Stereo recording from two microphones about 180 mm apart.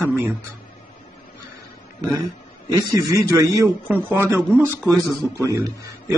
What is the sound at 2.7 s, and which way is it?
A man's voice, 20° right (ahead or behind).